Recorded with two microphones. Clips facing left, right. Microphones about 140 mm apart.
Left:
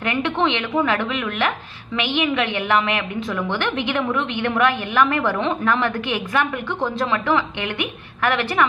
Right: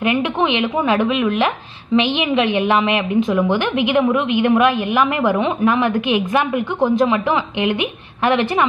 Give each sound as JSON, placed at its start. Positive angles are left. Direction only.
{"t": 0.0, "sound": "a woman's voice", "side_deg": -15}